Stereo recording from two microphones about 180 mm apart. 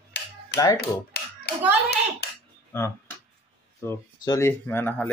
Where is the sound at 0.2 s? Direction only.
70° left (ahead or behind).